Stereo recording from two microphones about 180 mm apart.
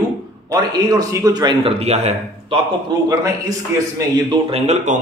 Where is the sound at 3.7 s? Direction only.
15° right (ahead or behind).